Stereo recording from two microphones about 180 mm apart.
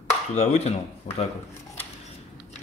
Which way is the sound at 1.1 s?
35° left (ahead or behind).